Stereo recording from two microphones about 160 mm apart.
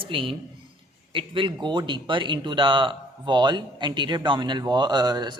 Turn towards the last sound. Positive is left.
turn(degrees=-25)  # may be behind; listen again after turning